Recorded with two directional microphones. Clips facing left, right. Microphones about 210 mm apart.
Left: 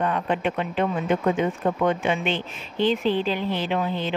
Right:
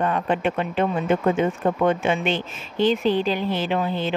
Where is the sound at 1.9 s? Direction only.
45° right (ahead or behind).